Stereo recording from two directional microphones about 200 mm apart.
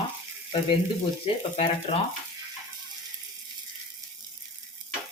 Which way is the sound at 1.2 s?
30° left (ahead or behind).